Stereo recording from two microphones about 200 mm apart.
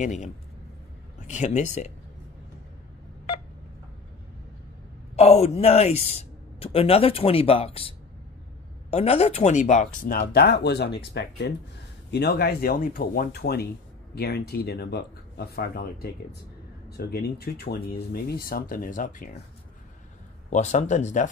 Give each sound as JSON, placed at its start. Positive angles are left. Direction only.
{"t": 0.0, "sound": "speech", "side_deg": 35}
{"t": 5.1, "sound": "speech", "side_deg": 30}
{"t": 8.9, "sound": "speech", "side_deg": 30}
{"t": 20.4, "sound": "speech", "side_deg": 35}